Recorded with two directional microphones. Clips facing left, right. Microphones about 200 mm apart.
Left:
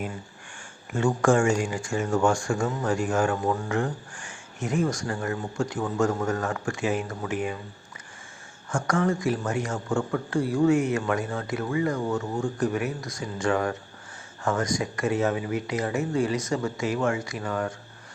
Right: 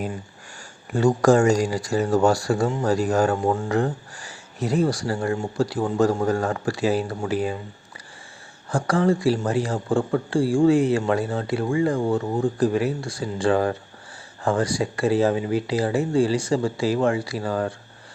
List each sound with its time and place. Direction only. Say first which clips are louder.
0.9 s speech: right 5 dB; 35° right (ahead or behind)
8.7 s speech: right 4 dB; 30° right (ahead or behind)